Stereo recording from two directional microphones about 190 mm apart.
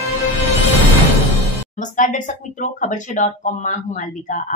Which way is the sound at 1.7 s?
40° left (ahead or behind).